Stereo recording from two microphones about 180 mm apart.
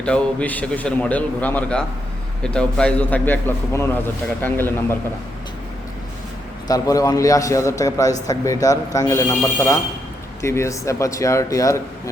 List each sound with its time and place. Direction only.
0.0 s a man's voice: 5° left (ahead or behind)
6.7 s a man's voice: 20° left (ahead or behind)